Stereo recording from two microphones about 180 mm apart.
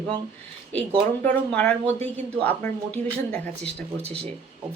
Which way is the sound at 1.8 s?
40° right (ahead or behind).